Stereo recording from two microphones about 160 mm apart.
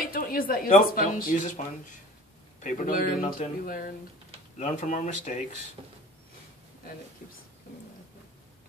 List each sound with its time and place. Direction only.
0.0 s speech: 65° left (ahead or behind)
2.6 s speech: 55° left (ahead or behind)